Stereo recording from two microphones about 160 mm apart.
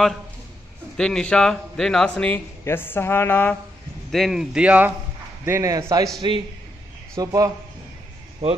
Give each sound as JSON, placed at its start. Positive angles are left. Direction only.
{"t": 0.9, "sound": "a man's voice", "side_deg": 5}
{"t": 4.1, "sound": "a man's voice", "side_deg": 0}
{"t": 7.2, "sound": "a man's voice", "side_deg": -20}
{"t": 8.4, "sound": "speech", "side_deg": -40}